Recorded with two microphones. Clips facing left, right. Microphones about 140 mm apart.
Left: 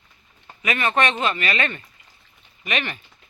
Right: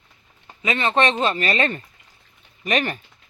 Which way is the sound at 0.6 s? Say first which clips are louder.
Right 2 dB; 25° right (ahead or behind).